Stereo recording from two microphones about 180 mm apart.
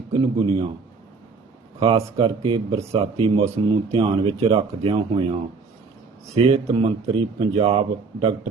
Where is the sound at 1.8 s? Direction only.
30° right (ahead or behind).